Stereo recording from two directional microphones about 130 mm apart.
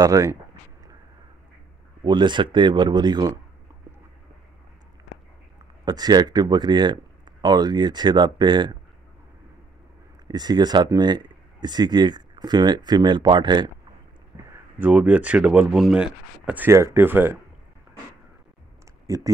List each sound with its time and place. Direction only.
0.0 s speech: 25° right (ahead or behind)
2.0 s speech: 35° right (ahead or behind)
5.9 s speech: 30° right (ahead or behind)
10.2 s speech: 30° right (ahead or behind)
14.8 s speech: 10° right (ahead or behind)
19.0 s speech: 25° right (ahead or behind)